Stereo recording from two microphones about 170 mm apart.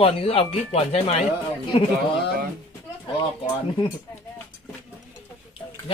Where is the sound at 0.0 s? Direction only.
35° left (ahead or behind).